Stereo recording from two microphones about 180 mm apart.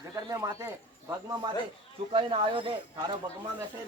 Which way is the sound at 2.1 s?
30° right (ahead or behind).